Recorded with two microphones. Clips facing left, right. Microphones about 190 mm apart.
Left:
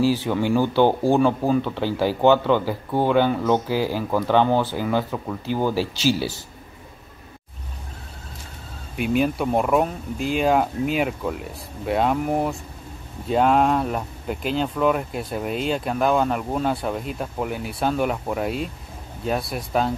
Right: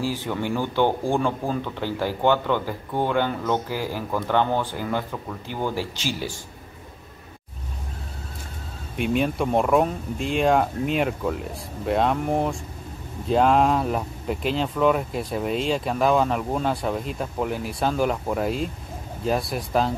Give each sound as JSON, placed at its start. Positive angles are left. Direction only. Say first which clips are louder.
{"t": 0.1, "sound": "speech", "louder": "left 6 dB", "side_deg": 15}
{"t": 5.8, "sound": "speech", "louder": "left 7 dB", "side_deg": 90}
{"t": 8.9, "sound": "speech", "louder": "left 2 dB", "side_deg": 5}